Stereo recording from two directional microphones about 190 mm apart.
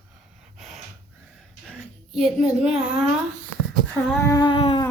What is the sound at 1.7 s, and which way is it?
Speech, centre (ahead or behind).